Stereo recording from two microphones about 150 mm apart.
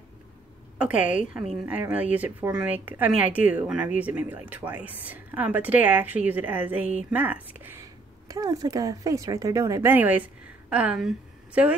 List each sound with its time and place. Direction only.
0.7 s a woman's voice: 10° right (ahead or behind)
1.3 s a woman's voice: centre (ahead or behind)
1.7 s a woman's voice: 10° right (ahead or behind)